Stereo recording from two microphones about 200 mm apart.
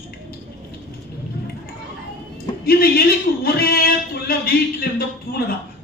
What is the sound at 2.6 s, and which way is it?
A man's voice, 50° left (ahead or behind).